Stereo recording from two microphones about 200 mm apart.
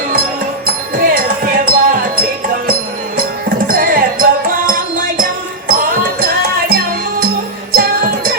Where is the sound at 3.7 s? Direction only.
45° right (ahead or behind).